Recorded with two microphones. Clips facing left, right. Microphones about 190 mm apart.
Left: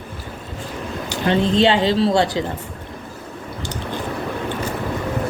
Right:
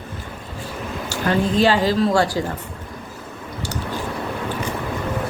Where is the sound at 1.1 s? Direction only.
25° left (ahead or behind).